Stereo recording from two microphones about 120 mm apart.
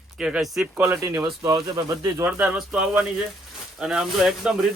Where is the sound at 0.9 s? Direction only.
25° right (ahead or behind).